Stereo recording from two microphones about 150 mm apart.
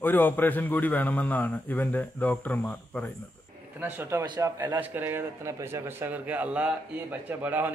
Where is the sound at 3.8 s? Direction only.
15° right (ahead or behind).